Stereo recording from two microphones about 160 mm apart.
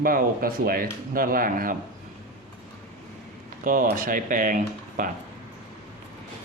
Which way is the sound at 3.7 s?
60° right (ahead or behind).